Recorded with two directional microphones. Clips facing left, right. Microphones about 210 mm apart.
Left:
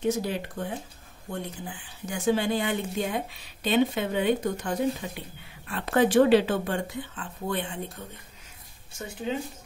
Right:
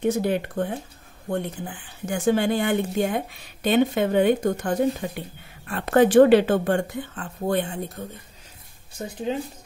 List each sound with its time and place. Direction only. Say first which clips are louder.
0.0 s speech: right 5 dB; 55° right (ahead or behind)